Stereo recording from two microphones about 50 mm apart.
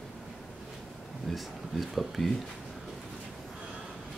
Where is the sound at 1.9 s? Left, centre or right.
Centre.